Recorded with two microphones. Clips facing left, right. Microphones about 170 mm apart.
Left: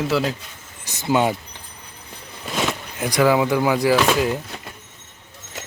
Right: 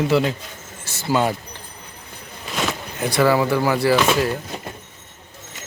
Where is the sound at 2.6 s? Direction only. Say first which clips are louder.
Right 2 dB; 10° left (ahead or behind).